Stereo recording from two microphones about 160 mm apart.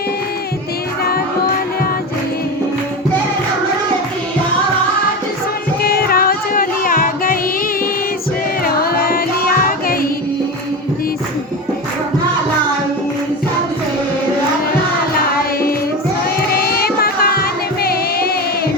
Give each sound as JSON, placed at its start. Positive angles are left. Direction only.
{"t": 5.8, "sound": "music", "side_deg": 70}
{"t": 8.6, "sound": "music", "side_deg": 70}
{"t": 16.5, "sound": "music", "side_deg": 75}